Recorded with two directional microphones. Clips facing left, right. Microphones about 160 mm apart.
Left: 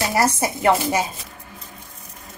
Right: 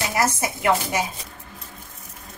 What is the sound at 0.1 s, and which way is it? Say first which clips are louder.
Speech: left 3 dB; 30° left (ahead or behind).